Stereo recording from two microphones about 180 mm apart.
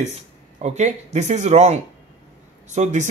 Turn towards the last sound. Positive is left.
turn(degrees=-40)  # may be behind; listen again after turning